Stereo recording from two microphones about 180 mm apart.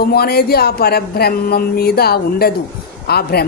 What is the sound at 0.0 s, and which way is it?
A man's voice, 60° left (ahead or behind).